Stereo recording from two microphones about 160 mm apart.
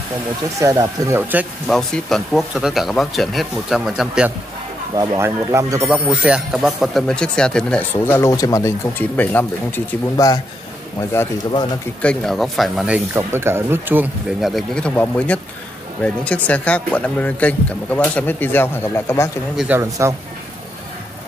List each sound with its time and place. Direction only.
0.6 s speech: 20° right (ahead or behind)
1.7 s speech: 5° left (ahead or behind)
4.9 s speech: 20° right (ahead or behind)
5.9 s speech: 5° right (ahead or behind); by 10.2 s 10° left (ahead or behind)
12.0 s speech: 5° left (ahead or behind); by 14.0 s 15° right (ahead or behind)
14.4 s speech: centre (ahead or behind)
19.5 s speech: 5° right (ahead or behind)
19.8 s speech: 15° right (ahead or behind)